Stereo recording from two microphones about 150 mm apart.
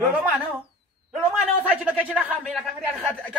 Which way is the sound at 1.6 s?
10° right (ahead or behind).